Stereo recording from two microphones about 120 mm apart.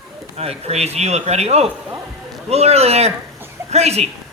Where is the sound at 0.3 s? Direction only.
60° right (ahead or behind).